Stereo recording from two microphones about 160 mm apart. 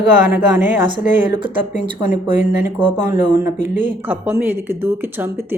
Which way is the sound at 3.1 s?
55° left (ahead or behind).